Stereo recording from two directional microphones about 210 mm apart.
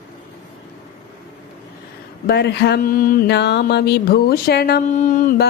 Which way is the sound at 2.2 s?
50° left (ahead or behind).